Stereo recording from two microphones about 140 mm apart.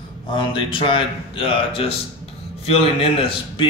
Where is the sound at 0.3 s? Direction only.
40° left (ahead or behind).